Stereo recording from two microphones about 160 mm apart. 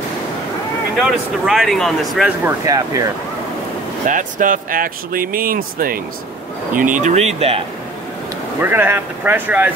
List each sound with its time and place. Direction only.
0.9 s speech: centre (ahead or behind)
2.4 s speech: 20° right (ahead or behind)
4.1 s speech: 55° right (ahead or behind); by 7.6 s 40° right (ahead or behind)
8.5 s speech: 15° right (ahead or behind)